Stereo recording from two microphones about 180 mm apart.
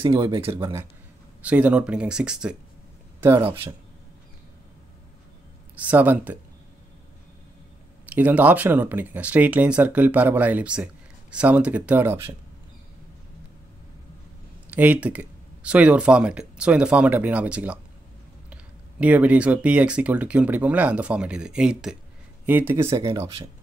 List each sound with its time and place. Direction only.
0.0 s speech: 30° right (ahead or behind)
1.4 s speech: 5° right (ahead or behind)
5.8 s speech: 10° right (ahead or behind)
8.1 s speech: 10° right (ahead or behind)
14.7 s speech: 10° right (ahead or behind)